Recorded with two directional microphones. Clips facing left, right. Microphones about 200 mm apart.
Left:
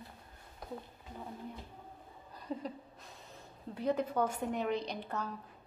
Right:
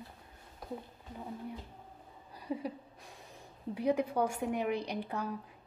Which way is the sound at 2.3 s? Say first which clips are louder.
Right 3 dB; 10° right (ahead or behind).